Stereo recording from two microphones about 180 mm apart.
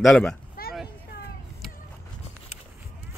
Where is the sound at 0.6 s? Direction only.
55° left (ahead or behind).